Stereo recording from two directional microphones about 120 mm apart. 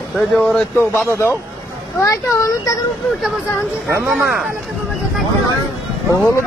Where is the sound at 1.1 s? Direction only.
20° left (ahead or behind).